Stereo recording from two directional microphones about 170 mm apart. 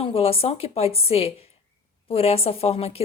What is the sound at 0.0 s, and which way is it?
A woman's voice, 35° left (ahead or behind).